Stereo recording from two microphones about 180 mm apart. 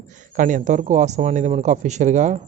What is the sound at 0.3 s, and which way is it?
A man's voice, 45° right (ahead or behind).